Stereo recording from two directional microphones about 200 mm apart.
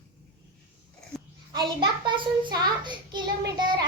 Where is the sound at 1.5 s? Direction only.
25° right (ahead or behind).